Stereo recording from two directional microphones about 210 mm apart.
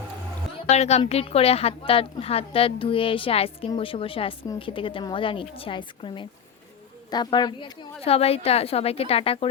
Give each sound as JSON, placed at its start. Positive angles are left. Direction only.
{"t": 0.7, "sound": "a woman's voice", "side_deg": 30}